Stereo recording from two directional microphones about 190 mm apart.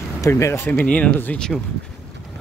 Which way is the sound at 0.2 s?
15° left (ahead or behind).